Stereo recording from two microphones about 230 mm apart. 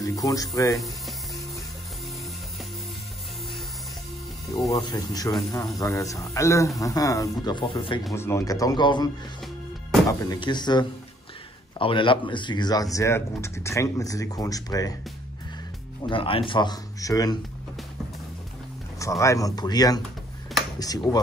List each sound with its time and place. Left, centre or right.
0.0 s speech: centre
0.7 s music: centre
4.5 s speech: centre
8.1 s speech: centre
10.2 s speech: centre
16.0 s speech: left
18.9 s speech: centre